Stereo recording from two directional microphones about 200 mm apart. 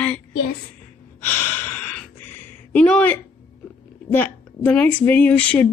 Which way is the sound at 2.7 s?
5° left (ahead or behind).